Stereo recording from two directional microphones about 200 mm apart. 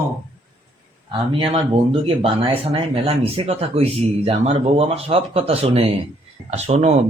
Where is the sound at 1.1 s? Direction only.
25° right (ahead or behind).